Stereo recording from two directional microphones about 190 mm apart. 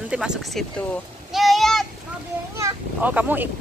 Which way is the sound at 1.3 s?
Centre (ahead or behind).